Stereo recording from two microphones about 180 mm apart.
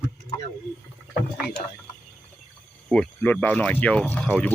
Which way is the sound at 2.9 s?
10° left (ahead or behind).